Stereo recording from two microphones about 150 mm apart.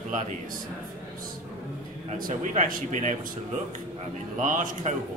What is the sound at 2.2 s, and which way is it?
Speech, 55° right (ahead or behind).